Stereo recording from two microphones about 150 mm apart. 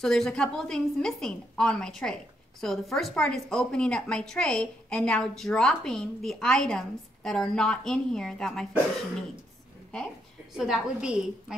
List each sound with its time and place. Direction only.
0.0 s a woman's voice: 5° left (ahead or behind)
10.5 s a woman's voice: 5° right (ahead or behind)